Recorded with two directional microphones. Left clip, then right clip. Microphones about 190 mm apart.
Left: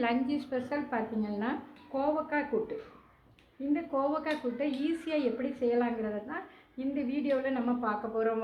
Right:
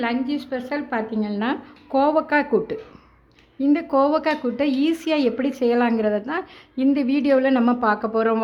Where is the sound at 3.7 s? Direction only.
55° right (ahead or behind).